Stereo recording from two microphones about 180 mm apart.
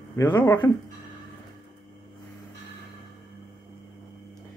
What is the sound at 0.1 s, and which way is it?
Speech, 20° left (ahead or behind).